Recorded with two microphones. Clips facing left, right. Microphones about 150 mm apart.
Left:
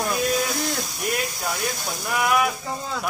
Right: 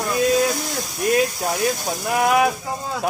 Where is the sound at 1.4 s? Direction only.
40° right (ahead or behind).